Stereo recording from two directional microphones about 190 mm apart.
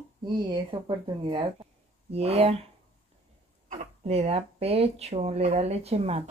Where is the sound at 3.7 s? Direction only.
35° right (ahead or behind).